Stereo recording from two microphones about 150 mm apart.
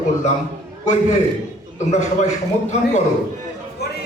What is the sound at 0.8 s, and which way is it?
A man's voice, 50° left (ahead or behind).